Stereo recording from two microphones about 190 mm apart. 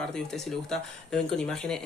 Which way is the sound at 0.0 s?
5° left (ahead or behind).